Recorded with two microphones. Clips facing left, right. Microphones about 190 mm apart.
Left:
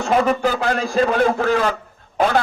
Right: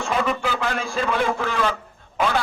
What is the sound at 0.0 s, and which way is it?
A man's voice, 40° left (ahead or behind).